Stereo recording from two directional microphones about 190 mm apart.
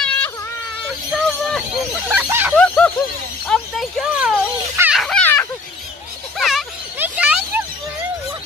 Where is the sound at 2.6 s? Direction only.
5° left (ahead or behind).